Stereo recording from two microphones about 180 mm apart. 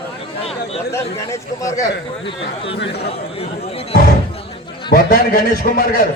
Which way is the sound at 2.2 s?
30° left (ahead or behind).